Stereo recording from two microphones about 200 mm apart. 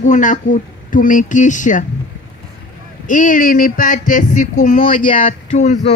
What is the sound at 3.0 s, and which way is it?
Speech, 40° left (ahead or behind).